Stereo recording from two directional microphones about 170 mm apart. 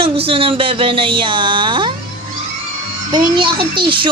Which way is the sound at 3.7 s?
30° right (ahead or behind).